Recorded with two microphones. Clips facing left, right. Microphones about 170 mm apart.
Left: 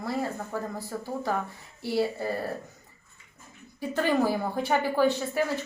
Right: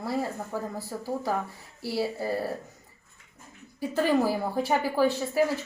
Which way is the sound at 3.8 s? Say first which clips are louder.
Right 1 dB; 5° right (ahead or behind).